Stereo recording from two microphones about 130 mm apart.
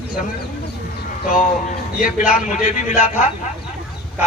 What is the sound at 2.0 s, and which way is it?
A man's voice, 75° left (ahead or behind).